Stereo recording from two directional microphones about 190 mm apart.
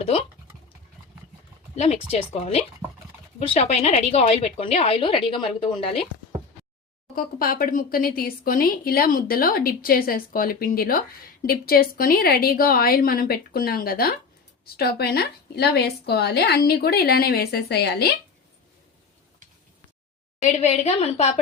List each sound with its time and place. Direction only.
0.0 s speech: 30° left (ahead or behind)
1.7 s a woman's voice: 35° left (ahead or behind)
7.2 s a woman's voice: 50° left (ahead or behind)
20.4 s a woman's voice: 35° left (ahead or behind)